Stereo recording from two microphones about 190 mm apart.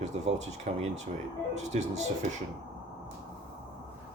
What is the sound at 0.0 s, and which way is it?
Speech, 35° right (ahead or behind).